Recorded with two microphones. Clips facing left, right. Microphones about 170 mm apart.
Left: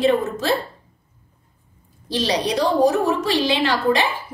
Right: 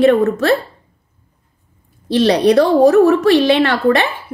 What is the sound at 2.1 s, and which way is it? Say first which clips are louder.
A woman's voice: right 10 dB; 60° right (ahead or behind).